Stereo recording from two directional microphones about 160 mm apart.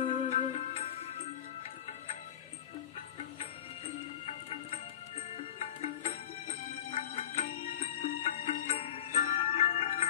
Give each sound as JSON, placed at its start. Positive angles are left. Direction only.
{"t": 0.0, "sound": "music", "side_deg": 35}
{"t": 0.4, "sound": "music", "side_deg": 45}
{"t": 3.2, "sound": "music", "side_deg": 40}